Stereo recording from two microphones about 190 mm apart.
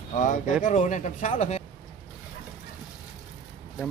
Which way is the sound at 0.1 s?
40° left (ahead or behind).